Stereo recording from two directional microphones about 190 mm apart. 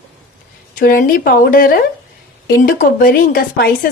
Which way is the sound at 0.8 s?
50° left (ahead or behind).